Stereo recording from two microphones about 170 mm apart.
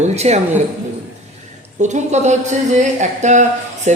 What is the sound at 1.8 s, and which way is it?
A man's voice, 45° right (ahead or behind).